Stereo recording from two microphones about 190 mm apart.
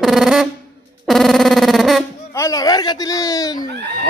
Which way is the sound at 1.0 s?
Centre (ahead or behind).